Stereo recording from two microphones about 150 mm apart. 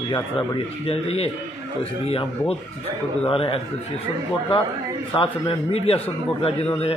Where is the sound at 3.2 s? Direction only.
40° left (ahead or behind).